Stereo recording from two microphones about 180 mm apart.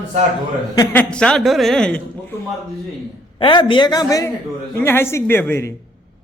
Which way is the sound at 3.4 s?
30° left (ahead or behind).